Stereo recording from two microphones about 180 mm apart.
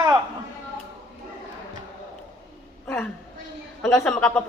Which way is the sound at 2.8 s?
10° left (ahead or behind).